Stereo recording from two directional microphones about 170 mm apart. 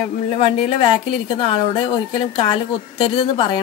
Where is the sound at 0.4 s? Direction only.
30° left (ahead or behind).